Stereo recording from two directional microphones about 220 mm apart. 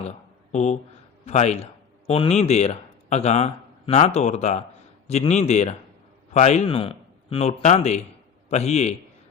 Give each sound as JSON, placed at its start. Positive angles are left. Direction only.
{"t": 0.5, "sound": "a man's voice", "side_deg": 30}